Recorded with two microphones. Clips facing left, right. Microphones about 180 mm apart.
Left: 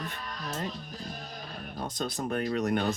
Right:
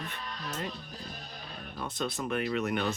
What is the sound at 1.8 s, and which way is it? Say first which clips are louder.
Speech: left 1 dB; 40° left (ahead or behind).